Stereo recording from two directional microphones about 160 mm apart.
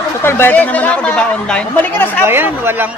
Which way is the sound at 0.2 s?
15° left (ahead or behind).